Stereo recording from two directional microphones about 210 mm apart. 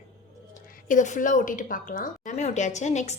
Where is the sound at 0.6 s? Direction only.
40° left (ahead or behind).